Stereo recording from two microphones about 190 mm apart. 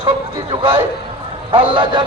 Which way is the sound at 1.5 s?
25° right (ahead or behind).